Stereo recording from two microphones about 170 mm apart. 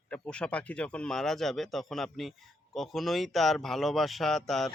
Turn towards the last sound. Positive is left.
turn(degrees=0)  # may be behind; listen again after turning